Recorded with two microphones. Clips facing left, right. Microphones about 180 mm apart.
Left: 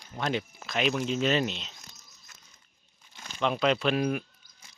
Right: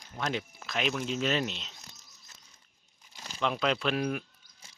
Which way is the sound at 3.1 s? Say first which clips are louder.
Even; 35° right (ahead or behind).